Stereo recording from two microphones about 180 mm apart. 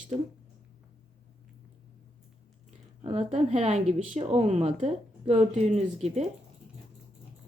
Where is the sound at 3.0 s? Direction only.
35° right (ahead or behind).